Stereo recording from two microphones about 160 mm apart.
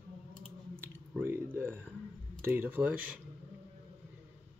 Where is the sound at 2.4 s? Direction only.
15° right (ahead or behind).